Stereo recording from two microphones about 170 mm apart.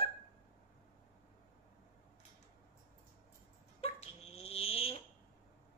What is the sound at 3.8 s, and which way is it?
Dog, 35° left (ahead or behind).